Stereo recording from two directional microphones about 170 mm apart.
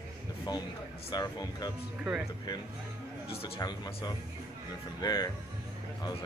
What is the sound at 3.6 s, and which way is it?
Speech, 25° left (ahead or behind).